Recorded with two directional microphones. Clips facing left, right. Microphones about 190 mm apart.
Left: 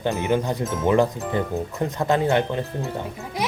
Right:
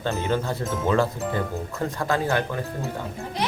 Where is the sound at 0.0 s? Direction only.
15° left (ahead or behind).